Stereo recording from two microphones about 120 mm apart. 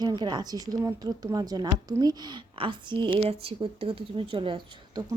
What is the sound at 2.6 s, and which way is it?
A woman's voice, 45° right (ahead or behind).